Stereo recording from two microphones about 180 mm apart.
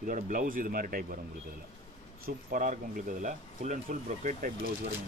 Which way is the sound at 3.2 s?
40° right (ahead or behind).